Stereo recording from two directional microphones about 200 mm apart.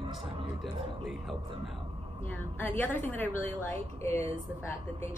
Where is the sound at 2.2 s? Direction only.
10° left (ahead or behind).